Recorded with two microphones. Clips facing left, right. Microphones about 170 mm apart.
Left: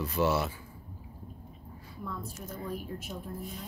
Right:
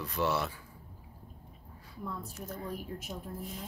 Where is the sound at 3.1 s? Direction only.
25° right (ahead or behind).